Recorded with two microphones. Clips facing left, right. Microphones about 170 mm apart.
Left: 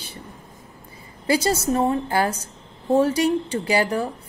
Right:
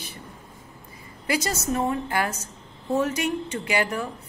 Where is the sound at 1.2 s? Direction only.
30° left (ahead or behind).